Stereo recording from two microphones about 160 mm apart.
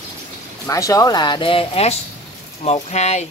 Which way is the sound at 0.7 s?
20° left (ahead or behind).